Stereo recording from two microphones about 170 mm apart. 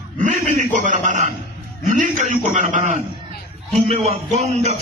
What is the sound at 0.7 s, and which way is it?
A man's voice, 45° right (ahead or behind).